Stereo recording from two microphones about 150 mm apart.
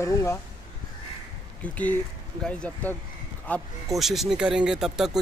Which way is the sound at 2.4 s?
10° left (ahead or behind).